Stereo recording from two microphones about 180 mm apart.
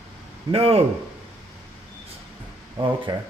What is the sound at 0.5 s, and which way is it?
Speech, 35° right (ahead or behind).